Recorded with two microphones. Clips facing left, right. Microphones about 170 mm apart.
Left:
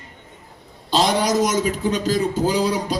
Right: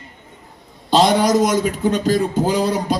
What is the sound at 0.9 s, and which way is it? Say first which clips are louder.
A man's voice: right 4 dB; 55° right (ahead or behind).